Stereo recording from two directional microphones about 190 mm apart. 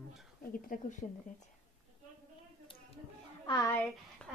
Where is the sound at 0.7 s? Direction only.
40° left (ahead or behind).